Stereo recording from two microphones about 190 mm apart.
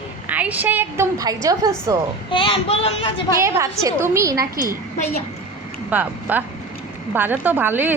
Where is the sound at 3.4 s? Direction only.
15° right (ahead or behind).